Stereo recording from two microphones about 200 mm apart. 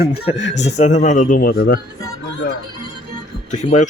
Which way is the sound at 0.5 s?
35° left (ahead or behind).